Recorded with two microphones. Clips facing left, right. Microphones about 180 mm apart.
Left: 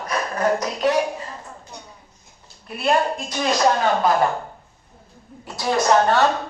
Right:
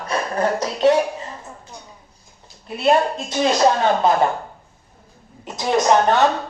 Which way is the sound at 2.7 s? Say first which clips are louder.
Right 3 dB; 25° right (ahead or behind).